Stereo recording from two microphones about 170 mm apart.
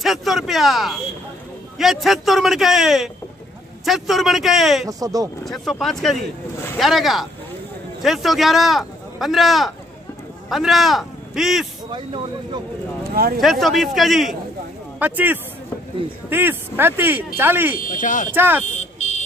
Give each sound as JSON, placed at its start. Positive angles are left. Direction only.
{"t": 0.0, "sound": "a man's voice", "side_deg": 0}
{"t": 4.8, "sound": "speech", "side_deg": -20}
{"t": 5.4, "sound": "a man's voice", "side_deg": 0}
{"t": 13.4, "sound": "a man's voice", "side_deg": 0}
{"t": 17.7, "sound": "speech", "side_deg": 50}
{"t": 18.3, "sound": "speech", "side_deg": -10}
{"t": 18.9, "sound": "vehicle", "side_deg": 45}